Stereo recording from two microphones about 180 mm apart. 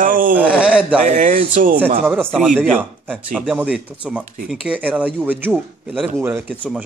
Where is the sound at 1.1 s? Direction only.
45° right (ahead or behind).